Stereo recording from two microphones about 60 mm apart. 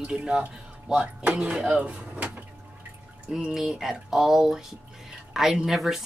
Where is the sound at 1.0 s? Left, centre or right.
Right.